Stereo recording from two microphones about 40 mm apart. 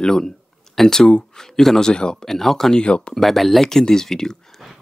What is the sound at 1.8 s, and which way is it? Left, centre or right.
Speech, centre.